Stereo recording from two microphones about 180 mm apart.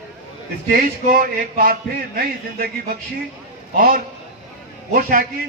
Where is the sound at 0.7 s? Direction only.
55° right (ahead or behind).